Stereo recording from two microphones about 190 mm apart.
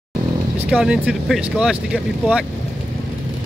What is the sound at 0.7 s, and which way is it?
Speech, 5° right (ahead or behind).